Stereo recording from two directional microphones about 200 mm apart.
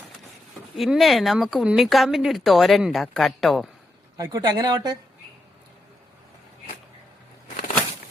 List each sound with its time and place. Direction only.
0.8 s speech: centre (ahead or behind)
4.2 s speech: 20° right (ahead or behind)